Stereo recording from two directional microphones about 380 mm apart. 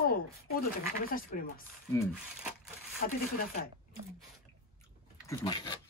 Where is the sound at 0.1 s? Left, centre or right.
Left.